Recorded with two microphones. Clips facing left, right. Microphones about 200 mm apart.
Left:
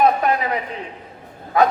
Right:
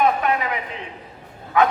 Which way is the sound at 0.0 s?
35° left (ahead or behind).